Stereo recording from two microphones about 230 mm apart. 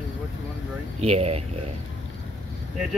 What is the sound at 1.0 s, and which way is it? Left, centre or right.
Speech, right.